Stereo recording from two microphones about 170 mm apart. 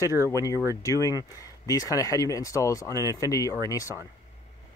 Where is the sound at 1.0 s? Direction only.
20° left (ahead or behind).